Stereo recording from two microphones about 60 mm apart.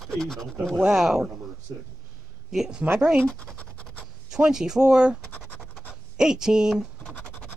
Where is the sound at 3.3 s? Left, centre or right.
Centre.